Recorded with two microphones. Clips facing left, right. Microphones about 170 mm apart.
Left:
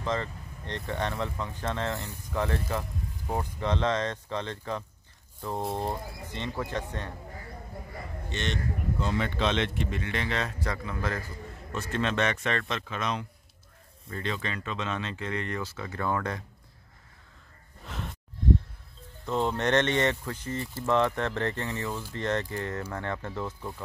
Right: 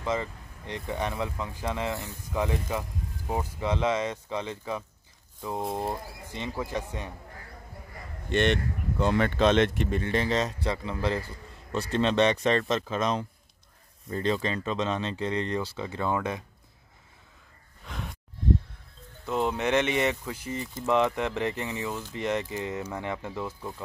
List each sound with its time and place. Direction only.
0.0 s speech: 10° right (ahead or behind)
8.3 s speech: 60° right (ahead or behind); by 10.5 s 35° right (ahead or behind)
10.6 s speech: 25° right (ahead or behind)
17.8 s sigh: centre (ahead or behind)
19.2 s speech: 5° right (ahead or behind)